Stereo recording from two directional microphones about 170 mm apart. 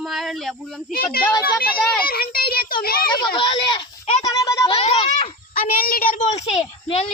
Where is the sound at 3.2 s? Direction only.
30° left (ahead or behind).